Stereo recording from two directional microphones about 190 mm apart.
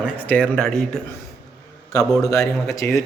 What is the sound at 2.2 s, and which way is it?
Speech, 15° left (ahead or behind).